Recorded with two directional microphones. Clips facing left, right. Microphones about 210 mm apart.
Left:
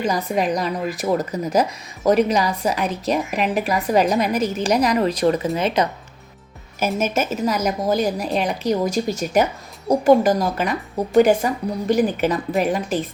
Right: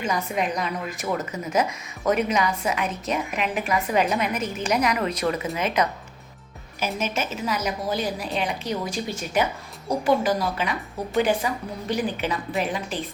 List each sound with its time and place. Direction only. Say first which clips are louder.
0.0 s a woman's voice: left 5 dB; 35° left (ahead or behind)
6.7 s a woman's voice: left 6 dB; 45° left (ahead or behind)